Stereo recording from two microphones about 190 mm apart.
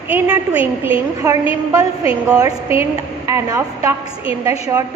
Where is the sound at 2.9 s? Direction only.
20° right (ahead or behind).